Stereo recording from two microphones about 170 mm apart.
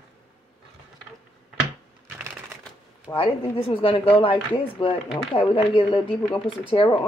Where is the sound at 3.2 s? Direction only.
30° left (ahead or behind).